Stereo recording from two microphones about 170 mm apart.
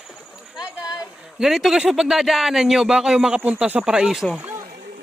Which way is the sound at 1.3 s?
Centre (ahead or behind).